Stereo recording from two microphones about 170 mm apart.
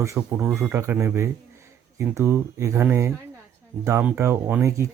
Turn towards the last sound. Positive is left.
turn(degrees=-15)  # may be behind; listen again after turning